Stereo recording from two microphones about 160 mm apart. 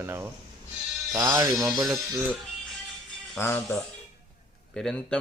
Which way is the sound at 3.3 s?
15° left (ahead or behind).